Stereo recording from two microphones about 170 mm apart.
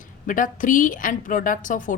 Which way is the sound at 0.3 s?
50° left (ahead or behind).